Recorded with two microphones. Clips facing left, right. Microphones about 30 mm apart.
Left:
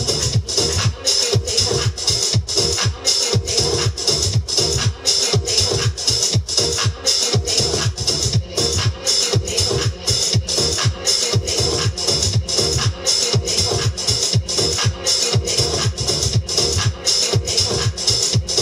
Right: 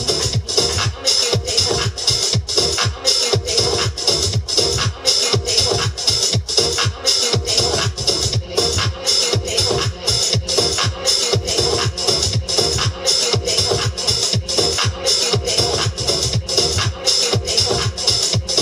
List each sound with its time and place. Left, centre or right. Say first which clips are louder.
0.0 s music: right 1 dB; centre